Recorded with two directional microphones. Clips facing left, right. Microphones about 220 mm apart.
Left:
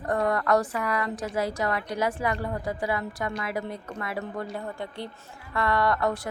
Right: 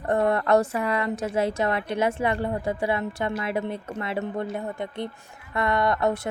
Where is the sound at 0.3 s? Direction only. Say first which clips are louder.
Right 2 dB; 25° right (ahead or behind).